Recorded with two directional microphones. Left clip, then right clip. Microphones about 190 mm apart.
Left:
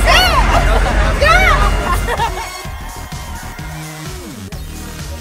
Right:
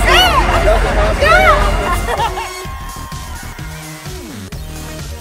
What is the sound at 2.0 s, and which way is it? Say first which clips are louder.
Music: right 1 dB; 15° right (ahead or behind).